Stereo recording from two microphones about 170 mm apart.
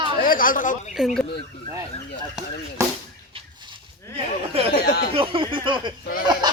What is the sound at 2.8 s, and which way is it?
Speech, 15° right (ahead or behind).